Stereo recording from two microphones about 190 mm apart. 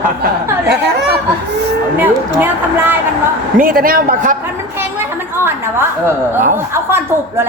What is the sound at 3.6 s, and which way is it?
Speech, 50° right (ahead or behind).